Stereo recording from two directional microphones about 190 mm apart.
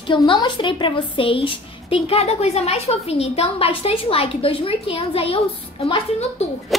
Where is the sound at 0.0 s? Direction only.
25° left (ahead or behind).